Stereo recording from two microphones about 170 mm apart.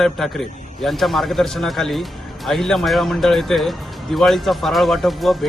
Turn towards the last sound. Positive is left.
turn(degrees=0)  # may be behind; listen again after turning